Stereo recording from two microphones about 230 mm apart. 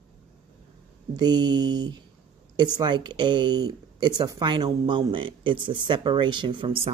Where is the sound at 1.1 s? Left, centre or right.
Centre.